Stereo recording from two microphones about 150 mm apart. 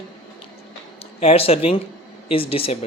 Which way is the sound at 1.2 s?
40° left (ahead or behind).